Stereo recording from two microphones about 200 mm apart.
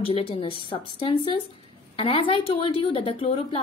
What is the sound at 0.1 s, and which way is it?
A woman's voice, 25° left (ahead or behind).